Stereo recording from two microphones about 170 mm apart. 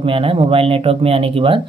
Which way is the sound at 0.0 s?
30° right (ahead or behind).